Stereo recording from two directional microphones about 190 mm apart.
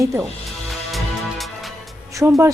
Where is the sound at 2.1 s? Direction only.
15° right (ahead or behind).